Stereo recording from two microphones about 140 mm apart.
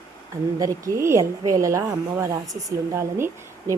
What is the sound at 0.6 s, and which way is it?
Speech, 20° right (ahead or behind).